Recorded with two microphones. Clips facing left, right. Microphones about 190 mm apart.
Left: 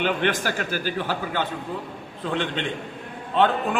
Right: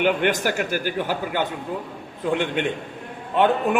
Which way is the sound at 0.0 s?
15° right (ahead or behind).